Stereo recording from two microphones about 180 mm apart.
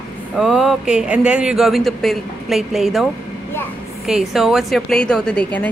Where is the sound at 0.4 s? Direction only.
Centre (ahead or behind).